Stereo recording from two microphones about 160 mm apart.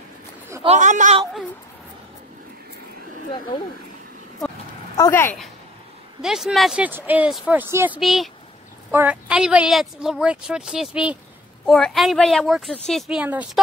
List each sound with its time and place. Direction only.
0.7 s a man's voice: 50° right (ahead or behind)
3.3 s speech: 30° left (ahead or behind)
4.9 s speech: 20° left (ahead or behind)
6.2 s speech: 5° right (ahead or behind)
8.0 s speech: centre (ahead or behind)
13.2 s speech: 10° right (ahead or behind)